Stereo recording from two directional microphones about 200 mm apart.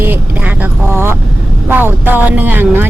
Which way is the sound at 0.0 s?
10° right (ahead or behind).